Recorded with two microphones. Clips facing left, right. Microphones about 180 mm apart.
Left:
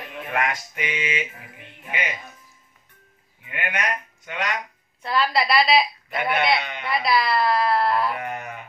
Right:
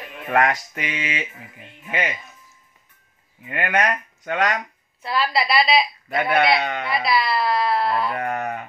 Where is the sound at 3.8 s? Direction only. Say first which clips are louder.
Right 8 dB; 45° right (ahead or behind).